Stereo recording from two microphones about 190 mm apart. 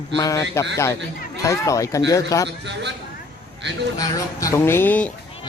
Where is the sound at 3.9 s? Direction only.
20° left (ahead or behind).